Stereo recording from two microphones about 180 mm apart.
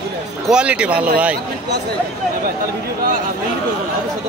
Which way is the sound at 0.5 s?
5° right (ahead or behind).